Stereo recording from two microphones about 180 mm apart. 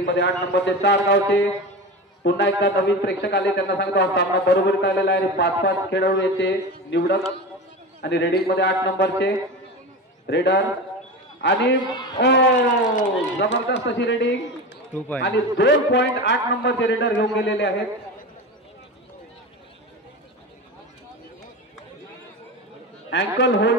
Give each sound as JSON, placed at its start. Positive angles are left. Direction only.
{"t": 0.0, "sound": "a man's voice", "side_deg": 75}
{"t": 23.0, "sound": "a man's voice", "side_deg": 75}